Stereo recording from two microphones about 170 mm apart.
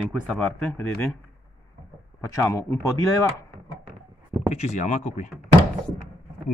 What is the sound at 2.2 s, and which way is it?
Speech, 20° left (ahead or behind).